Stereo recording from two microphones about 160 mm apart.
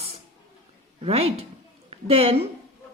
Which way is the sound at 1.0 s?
40° right (ahead or behind).